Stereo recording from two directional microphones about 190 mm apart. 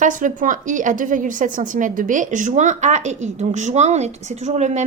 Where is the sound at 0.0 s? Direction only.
45° right (ahead or behind).